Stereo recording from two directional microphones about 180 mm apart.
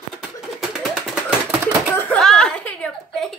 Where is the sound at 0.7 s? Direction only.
Centre (ahead or behind).